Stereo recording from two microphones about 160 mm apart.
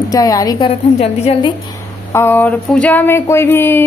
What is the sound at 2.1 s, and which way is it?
A woman's voice, 15° left (ahead or behind).